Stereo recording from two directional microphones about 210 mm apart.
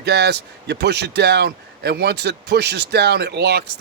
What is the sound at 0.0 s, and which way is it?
Speech, 50° right (ahead or behind).